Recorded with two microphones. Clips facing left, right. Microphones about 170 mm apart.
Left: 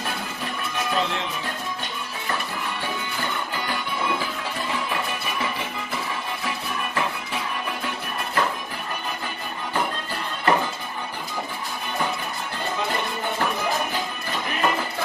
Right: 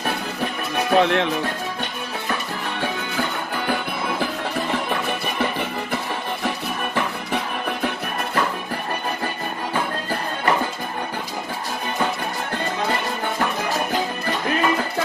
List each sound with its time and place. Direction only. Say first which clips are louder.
0.8 s speech: right 10 dB; 65° right (ahead or behind)
3.6 s music: right 3 dB; 55° right (ahead or behind)